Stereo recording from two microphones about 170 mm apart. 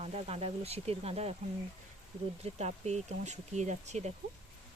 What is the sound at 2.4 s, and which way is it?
Speech, 40° right (ahead or behind).